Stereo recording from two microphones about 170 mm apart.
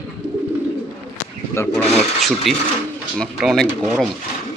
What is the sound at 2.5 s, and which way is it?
Speech, centre (ahead or behind).